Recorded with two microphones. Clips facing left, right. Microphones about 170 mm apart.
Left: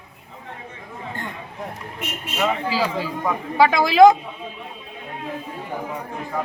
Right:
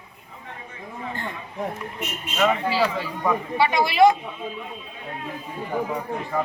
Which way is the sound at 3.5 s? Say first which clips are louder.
Left 7 dB; 90° left.